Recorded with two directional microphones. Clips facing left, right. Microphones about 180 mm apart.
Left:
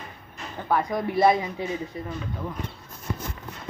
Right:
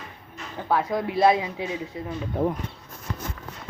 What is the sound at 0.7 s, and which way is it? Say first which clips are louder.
Speech: even; 5° right (ahead or behind).